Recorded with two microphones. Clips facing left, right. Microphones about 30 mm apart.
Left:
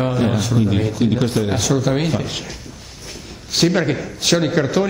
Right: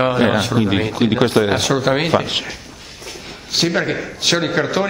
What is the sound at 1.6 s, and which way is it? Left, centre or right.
Speech, right.